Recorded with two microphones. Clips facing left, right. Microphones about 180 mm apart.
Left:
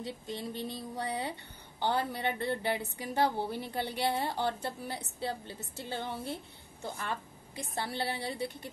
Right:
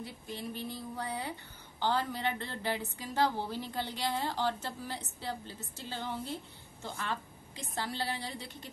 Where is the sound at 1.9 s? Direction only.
15° left (ahead or behind).